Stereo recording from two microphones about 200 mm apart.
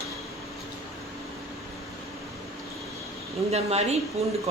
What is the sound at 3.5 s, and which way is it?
Speech, 35° right (ahead or behind).